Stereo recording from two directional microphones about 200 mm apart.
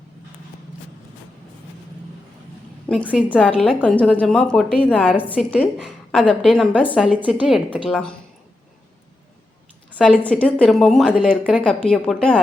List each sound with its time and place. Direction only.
3.2 s speech: 5° left (ahead or behind)
9.9 s speech: 5° left (ahead or behind)